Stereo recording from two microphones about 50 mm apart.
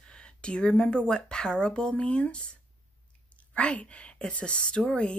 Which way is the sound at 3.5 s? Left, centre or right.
Left.